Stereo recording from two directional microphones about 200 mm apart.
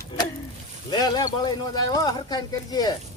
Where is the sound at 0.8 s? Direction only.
20° left (ahead or behind).